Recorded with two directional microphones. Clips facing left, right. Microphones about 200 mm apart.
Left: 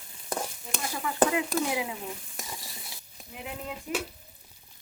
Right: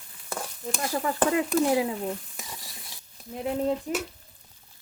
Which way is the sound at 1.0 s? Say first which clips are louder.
Even; 40° right (ahead or behind).